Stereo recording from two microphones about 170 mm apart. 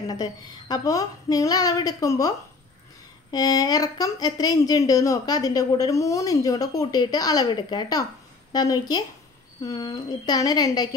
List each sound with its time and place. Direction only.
0.1 s a woman's voice: 25° left (ahead or behind)